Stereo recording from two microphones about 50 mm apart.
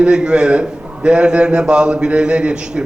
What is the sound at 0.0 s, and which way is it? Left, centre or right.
A man's voice, centre.